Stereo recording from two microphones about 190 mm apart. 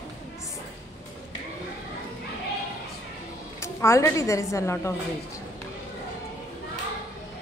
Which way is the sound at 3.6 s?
15° left (ahead or behind).